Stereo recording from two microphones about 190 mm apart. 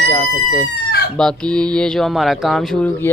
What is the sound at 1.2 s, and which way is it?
Speech, 5° left (ahead or behind).